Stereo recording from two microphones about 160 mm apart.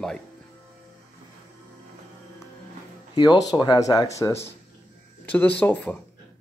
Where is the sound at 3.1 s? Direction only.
25° left (ahead or behind); by 5.9 s 10° left (ahead or behind).